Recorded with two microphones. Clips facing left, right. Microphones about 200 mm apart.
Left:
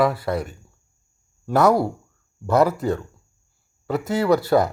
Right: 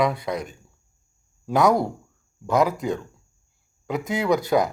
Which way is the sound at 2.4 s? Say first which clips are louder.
Left 3 dB; 15° right (ahead or behind).